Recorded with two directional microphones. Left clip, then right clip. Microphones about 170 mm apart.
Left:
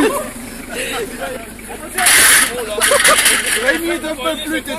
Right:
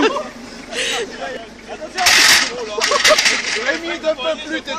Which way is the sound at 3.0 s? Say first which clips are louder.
Right 2 dB; centre (ahead or behind).